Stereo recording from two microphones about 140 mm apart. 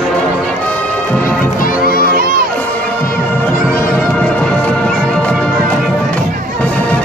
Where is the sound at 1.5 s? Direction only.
85° left.